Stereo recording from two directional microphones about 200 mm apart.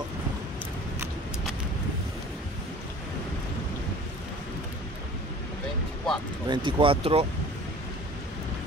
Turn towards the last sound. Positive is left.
turn(degrees=-30)  # may be behind; listen again after turning